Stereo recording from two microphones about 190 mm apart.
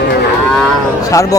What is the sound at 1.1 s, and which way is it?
Speech, 15° left (ahead or behind).